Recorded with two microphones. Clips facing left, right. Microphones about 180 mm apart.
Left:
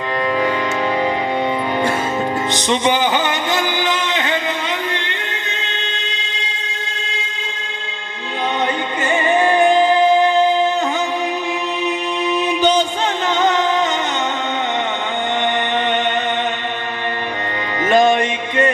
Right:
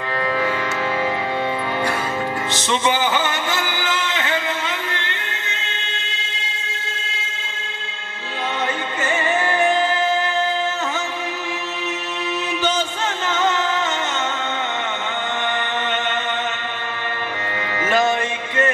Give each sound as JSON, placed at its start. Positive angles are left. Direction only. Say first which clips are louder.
{"t": 2.5, "sound": "music", "louder": "left 3 dB", "side_deg": 15}
{"t": 9.1, "sound": "music", "louder": "left 6 dB", "side_deg": 20}
{"t": 12.4, "sound": "music", "louder": "left 6 dB", "side_deg": 15}
{"t": 17.8, "sound": "music", "louder": "left 6 dB", "side_deg": 15}